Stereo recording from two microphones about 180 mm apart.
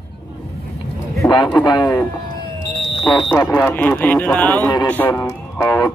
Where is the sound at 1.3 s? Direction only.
25° left (ahead or behind).